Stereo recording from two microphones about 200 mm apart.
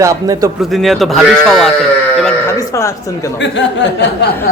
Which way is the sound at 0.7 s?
Centre (ahead or behind).